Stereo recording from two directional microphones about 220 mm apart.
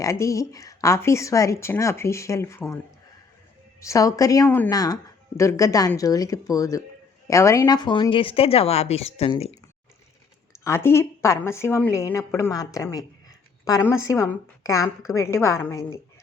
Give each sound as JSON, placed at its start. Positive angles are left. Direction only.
{"t": 0.0, "sound": "a woman's voice", "side_deg": 15}
{"t": 10.5, "sound": "speech", "side_deg": 10}